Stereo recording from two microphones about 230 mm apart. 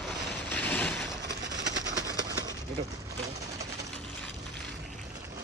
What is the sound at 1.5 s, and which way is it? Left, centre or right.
Train, centre.